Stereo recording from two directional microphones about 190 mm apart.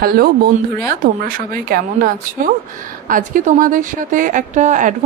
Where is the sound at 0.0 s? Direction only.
55° right (ahead or behind).